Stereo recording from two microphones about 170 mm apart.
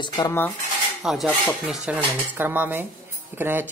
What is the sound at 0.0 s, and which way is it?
Speech, 25° left (ahead or behind).